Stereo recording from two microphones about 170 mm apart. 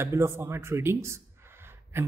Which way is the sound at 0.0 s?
15° right (ahead or behind).